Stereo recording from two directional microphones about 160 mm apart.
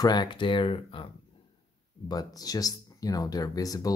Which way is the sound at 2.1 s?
25° left (ahead or behind).